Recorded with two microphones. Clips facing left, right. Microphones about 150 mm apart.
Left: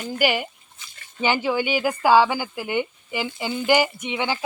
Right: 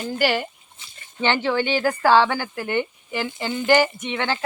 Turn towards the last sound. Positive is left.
turn(degrees=10)  # may be behind; listen again after turning